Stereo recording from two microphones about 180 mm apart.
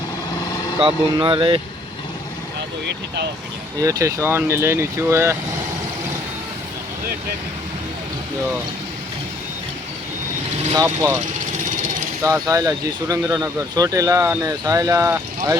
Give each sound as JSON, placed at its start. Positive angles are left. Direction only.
{"t": 0.8, "sound": "speech", "side_deg": -30}
{"t": 3.8, "sound": "speech", "side_deg": -20}
{"t": 10.8, "sound": "speech", "side_deg": -10}
{"t": 12.2, "sound": "speech", "side_deg": -20}